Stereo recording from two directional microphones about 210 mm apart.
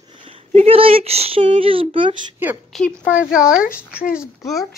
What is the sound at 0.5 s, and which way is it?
Speech, 30° right (ahead or behind).